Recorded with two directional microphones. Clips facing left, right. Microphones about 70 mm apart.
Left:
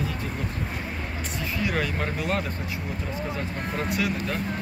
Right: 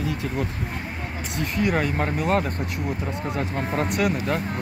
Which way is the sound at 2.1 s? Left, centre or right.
Right.